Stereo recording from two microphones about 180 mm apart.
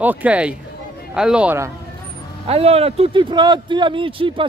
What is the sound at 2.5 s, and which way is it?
Speech, 35° right (ahead or behind).